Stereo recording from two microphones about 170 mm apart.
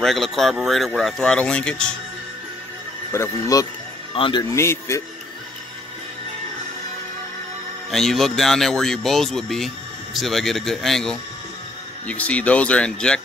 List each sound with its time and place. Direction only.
0.0 s speech: centre (ahead or behind)
3.1 s speech: 20° left (ahead or behind)
4.1 s a man's voice: 30° left (ahead or behind)
7.9 s speech: centre (ahead or behind)